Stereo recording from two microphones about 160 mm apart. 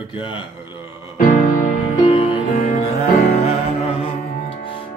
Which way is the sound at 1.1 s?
55° left (ahead or behind).